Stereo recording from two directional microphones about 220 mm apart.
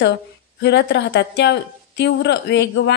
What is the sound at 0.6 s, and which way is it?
A woman's voice, 50° left (ahead or behind).